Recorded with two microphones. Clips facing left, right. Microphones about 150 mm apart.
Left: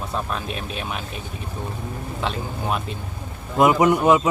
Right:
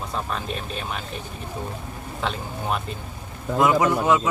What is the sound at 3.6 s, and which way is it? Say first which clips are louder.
Speech: left 4 dB; 20° left (ahead or behind).